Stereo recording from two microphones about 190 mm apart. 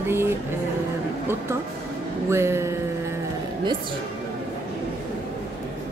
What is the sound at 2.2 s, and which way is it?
Music, 15° right (ahead or behind).